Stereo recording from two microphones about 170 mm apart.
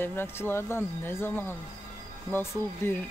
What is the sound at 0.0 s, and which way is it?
Speech, 10° left (ahead or behind).